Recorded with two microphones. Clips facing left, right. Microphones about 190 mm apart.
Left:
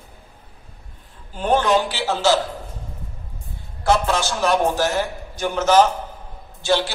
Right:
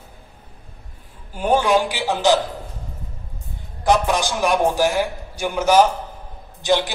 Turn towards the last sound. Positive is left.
turn(degrees=-15)  # may be behind; listen again after turning